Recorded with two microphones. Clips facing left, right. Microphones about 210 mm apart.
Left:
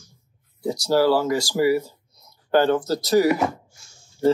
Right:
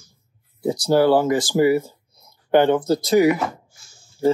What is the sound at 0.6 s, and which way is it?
Speech, 20° right (ahead or behind).